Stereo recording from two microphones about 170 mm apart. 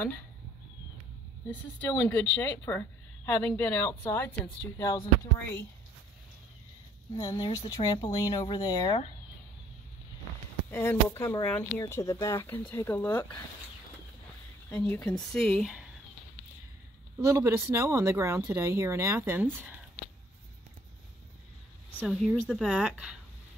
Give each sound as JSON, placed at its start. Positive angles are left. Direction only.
{"t": 1.5, "sound": "speech", "side_deg": 10}
{"t": 7.2, "sound": "speech", "side_deg": 25}
{"t": 10.7, "sound": "speech", "side_deg": 15}
{"t": 14.9, "sound": "speech", "side_deg": 10}
{"t": 17.2, "sound": "speech", "side_deg": -15}
{"t": 22.0, "sound": "speech", "side_deg": 0}